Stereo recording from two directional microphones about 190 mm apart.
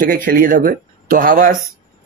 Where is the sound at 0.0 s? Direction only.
45° right (ahead or behind).